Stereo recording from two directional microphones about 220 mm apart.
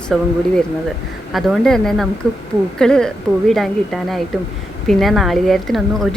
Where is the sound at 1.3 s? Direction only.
Centre (ahead or behind).